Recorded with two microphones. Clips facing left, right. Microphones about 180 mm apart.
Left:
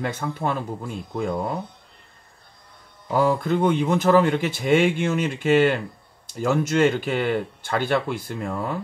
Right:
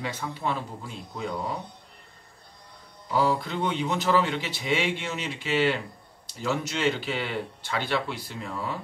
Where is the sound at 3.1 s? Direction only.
50° left (ahead or behind).